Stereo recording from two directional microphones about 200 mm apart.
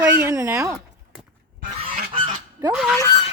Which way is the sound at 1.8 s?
20° right (ahead or behind).